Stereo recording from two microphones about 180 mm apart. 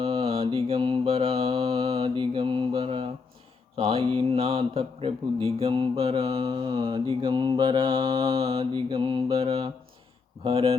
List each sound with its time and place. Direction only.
0.0 s mantra: 30° right (ahead or behind)
3.8 s speech: 30° right (ahead or behind)